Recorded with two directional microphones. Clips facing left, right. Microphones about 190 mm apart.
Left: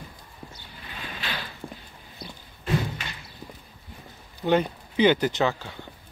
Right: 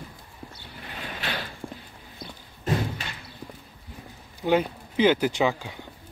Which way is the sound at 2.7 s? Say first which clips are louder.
Even; 40° right (ahead or behind).